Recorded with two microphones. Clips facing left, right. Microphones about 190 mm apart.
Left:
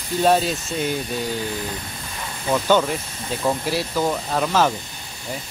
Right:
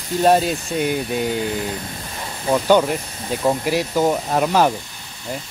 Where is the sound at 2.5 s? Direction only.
15° right (ahead or behind).